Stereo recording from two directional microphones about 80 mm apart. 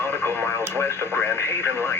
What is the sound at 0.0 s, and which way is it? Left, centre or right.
Radio, left.